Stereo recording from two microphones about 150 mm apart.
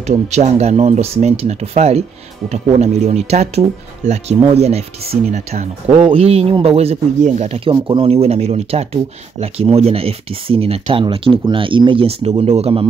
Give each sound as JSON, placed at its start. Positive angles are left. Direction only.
{"t": 0.0, "sound": "speech", "side_deg": -50}